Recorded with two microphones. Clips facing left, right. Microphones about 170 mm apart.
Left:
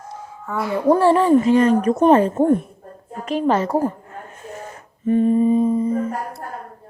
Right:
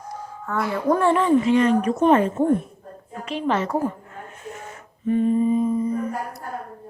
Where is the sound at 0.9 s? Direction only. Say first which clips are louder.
Left 4 dB; 35° left (ahead or behind).